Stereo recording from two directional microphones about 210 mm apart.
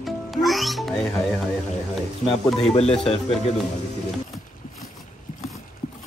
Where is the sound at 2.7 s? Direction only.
30° left (ahead or behind).